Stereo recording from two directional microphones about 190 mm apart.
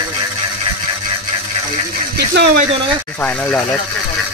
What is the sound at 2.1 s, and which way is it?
Speech, 60° right (ahead or behind).